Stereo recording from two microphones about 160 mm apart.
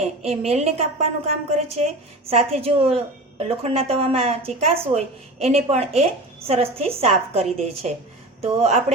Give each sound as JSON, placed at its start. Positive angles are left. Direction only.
{"t": 0.0, "sound": "a woman's voice", "side_deg": -40}